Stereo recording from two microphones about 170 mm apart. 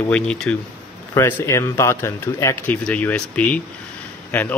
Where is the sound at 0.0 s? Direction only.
5° left (ahead or behind).